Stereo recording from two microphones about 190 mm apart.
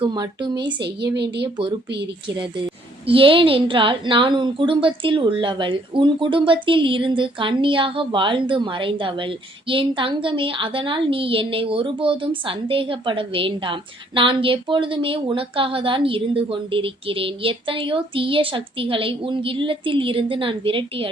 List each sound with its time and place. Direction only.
0.0 s a woman's voice: 25° right (ahead or behind)
1.1 s speech: 60° right (ahead or behind)
3.1 s a woman's voice: 30° right (ahead or behind)